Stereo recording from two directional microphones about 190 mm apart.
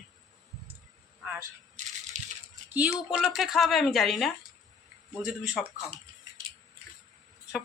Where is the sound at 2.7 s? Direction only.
5° right (ahead or behind).